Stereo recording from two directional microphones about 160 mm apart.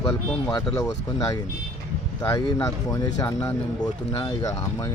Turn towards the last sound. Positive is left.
turn(degrees=20)  # may be behind; listen again after turning